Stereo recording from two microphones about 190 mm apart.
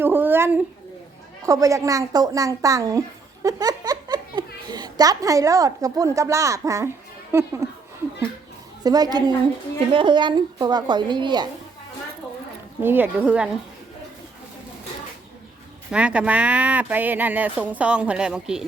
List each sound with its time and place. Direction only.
0.0 s a child's voice: 10° right (ahead or behind)
8.8 s a woman's voice: 20° right (ahead or behind)
12.8 s speech: 10° right (ahead or behind)
15.9 s speech: 5° right (ahead or behind)